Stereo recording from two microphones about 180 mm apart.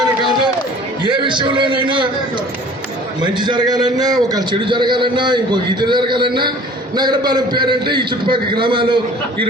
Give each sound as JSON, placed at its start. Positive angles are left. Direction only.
{"t": 0.2, "sound": "a sound", "side_deg": -25}
{"t": 1.0, "sound": "a man's voice", "side_deg": -25}
{"t": 3.2, "sound": "a man's voice", "side_deg": -25}